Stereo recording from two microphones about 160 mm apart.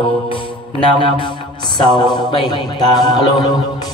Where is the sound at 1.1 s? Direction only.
30° left (ahead or behind).